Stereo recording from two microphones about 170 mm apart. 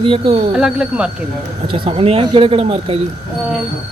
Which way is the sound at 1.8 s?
35° right (ahead or behind).